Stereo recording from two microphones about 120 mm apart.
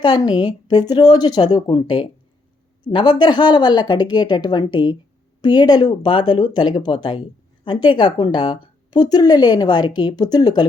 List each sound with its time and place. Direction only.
0.0 s a woman's voice: 35° left (ahead or behind)